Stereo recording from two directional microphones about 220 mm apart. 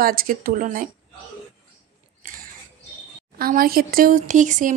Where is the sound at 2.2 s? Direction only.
40° right (ahead or behind).